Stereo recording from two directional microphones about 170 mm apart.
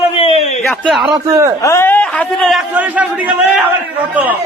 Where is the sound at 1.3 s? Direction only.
20° right (ahead or behind).